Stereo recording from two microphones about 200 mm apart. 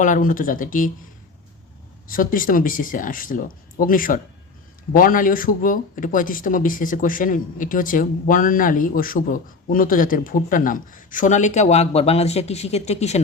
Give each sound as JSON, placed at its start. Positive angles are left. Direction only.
{"t": 0.0, "sound": "speech", "side_deg": 40}
{"t": 2.0, "sound": "speech", "side_deg": 45}